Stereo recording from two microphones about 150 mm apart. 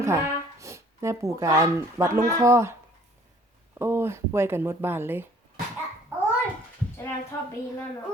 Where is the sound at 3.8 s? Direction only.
15° right (ahead or behind).